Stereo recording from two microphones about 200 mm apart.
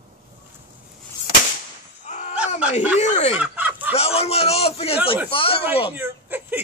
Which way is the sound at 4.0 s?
30° left (ahead or behind).